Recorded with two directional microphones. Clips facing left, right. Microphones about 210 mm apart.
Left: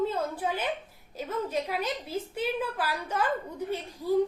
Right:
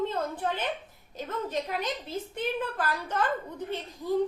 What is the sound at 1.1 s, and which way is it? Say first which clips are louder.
A woman's voice: left 1 dB; 10° left (ahead or behind).